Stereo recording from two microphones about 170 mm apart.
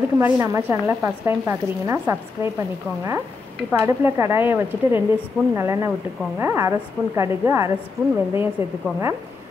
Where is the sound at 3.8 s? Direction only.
15° right (ahead or behind).